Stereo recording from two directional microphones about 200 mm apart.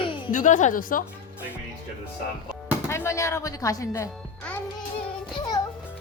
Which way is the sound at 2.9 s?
15° left (ahead or behind).